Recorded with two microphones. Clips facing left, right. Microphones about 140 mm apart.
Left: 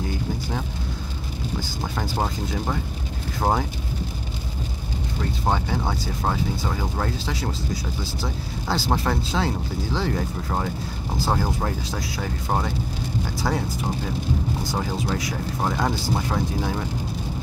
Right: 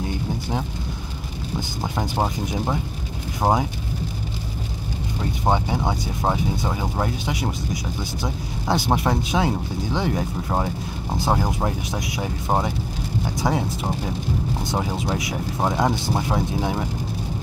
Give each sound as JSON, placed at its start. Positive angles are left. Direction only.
{"t": 1.6, "sound": "speech", "side_deg": -20}
{"t": 5.4, "sound": "speech", "side_deg": -20}